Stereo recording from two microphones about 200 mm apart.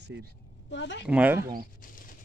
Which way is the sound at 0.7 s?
60° left (ahead or behind).